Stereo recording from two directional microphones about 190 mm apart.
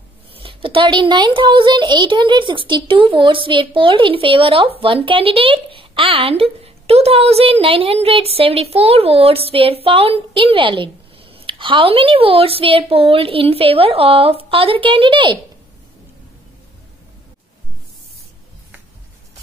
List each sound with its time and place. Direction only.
0.3 s a woman's voice: 30° right (ahead or behind)